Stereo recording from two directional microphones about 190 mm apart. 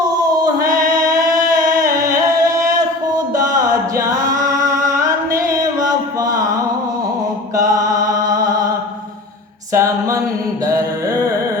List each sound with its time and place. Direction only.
1.0 s music: 20° right (ahead or behind)
6.1 s a sound: 20° right (ahead or behind)
7.7 s music: 20° right (ahead or behind)
9.7 s music: 15° right (ahead or behind)
10.7 s mantra: 15° right (ahead or behind)